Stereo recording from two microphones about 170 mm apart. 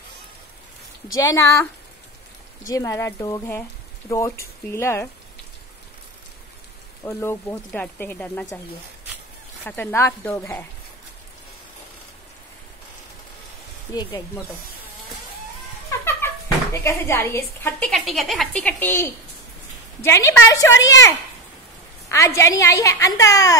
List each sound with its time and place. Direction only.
1.0 s a woman's voice: 20° left (ahead or behind)
2.7 s a woman's voice: 20° left (ahead or behind)
7.1 s a woman's voice: 15° left (ahead or behind)
9.7 s a woman's voice: 10° left (ahead or behind)
13.9 s speech: 25° left (ahead or behind)
16.2 s a sound: 15° left (ahead or behind)
16.7 s a woman's voice: 15° left (ahead or behind)
17.8 s a woman's voice: centre (ahead or behind); by 21.1 s 20° left (ahead or behind)
22.1 s a woman's voice: 15° left (ahead or behind)